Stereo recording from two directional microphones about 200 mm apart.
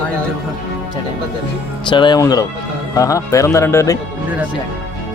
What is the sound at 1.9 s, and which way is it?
Speech, 25° left (ahead or behind).